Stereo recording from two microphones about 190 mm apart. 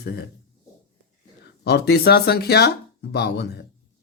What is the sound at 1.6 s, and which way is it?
Speech, 60° left (ahead or behind).